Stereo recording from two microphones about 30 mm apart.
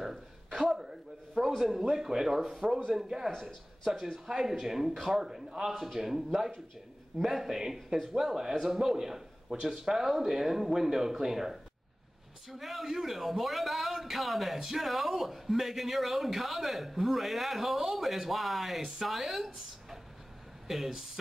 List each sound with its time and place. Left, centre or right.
0.7 s a sound: centre
1.6 s speech: centre
4.3 s a man's voice: centre